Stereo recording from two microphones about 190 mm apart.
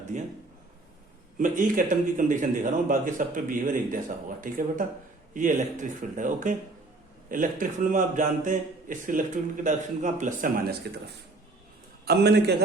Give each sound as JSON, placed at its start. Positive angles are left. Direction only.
{"t": 0.1, "sound": "a man's voice", "side_deg": -40}
{"t": 1.4, "sound": "speech", "side_deg": -45}
{"t": 12.0, "sound": "a man's voice", "side_deg": -55}